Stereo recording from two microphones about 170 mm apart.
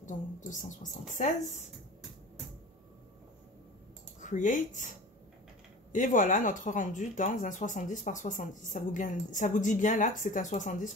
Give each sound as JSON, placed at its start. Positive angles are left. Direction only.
{"t": 0.0, "sound": "speech", "side_deg": 50}
{"t": 4.2, "sound": "speech", "side_deg": 50}